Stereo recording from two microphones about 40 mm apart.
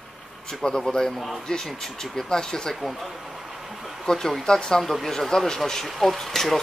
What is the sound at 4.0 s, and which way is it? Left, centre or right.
Speech, centre.